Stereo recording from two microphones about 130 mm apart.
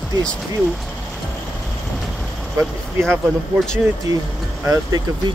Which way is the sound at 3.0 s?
5° left (ahead or behind).